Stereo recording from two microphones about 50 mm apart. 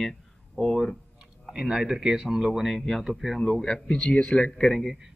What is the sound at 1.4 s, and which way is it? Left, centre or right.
Speech, centre.